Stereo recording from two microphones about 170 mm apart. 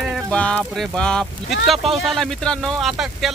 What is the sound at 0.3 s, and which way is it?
Speech, 5° left (ahead or behind).